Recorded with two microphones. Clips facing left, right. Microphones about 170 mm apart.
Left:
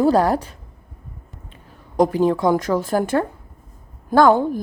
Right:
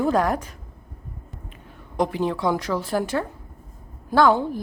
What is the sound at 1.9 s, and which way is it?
Speech, 40° left (ahead or behind).